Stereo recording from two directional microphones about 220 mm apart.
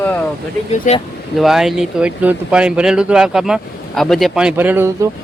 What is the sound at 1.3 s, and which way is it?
Speech, centre (ahead or behind).